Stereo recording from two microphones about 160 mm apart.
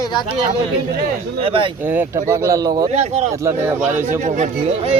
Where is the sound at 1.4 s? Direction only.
35° right (ahead or behind).